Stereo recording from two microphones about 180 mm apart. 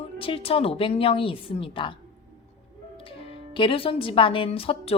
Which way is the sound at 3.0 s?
30° left (ahead or behind).